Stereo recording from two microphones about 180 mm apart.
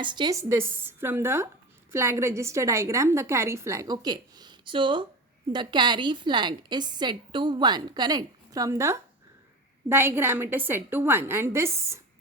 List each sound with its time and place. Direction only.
0.0 s a woman's voice: 25° right (ahead or behind)